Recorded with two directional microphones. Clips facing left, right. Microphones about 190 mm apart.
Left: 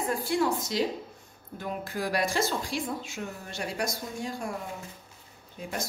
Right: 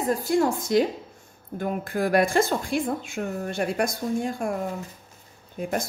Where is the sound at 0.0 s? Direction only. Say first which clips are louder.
Right 5 dB; 40° right (ahead or behind).